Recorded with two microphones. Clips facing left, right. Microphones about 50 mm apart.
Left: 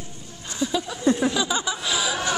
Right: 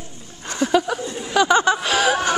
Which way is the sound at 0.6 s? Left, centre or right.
Right.